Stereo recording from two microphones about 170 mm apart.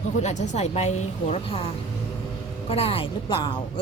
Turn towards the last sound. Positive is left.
turn(degrees=30)  # may be behind; listen again after turning